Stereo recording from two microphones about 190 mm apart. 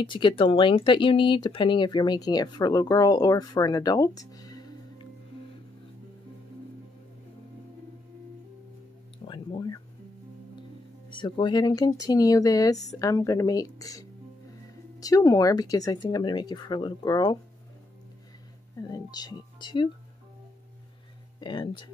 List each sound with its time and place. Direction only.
0.0 s speech: 25° left (ahead or behind)
9.3 s a sound: 25° left (ahead or behind)
11.1 s speech: 25° left (ahead or behind)
18.8 s speech: 20° left (ahead or behind)
21.4 s speech: 25° left (ahead or behind)